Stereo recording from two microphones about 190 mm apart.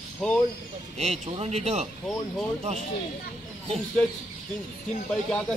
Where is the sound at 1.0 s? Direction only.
35° right (ahead or behind).